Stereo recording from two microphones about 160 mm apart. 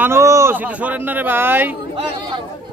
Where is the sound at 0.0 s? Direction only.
15° right (ahead or behind).